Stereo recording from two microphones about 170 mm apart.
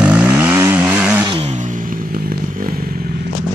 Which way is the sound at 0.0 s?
10° right (ahead or behind).